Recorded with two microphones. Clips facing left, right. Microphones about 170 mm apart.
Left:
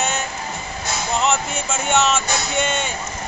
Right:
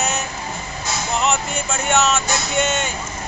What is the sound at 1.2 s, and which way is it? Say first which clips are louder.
Speech: even; centre (ahead or behind).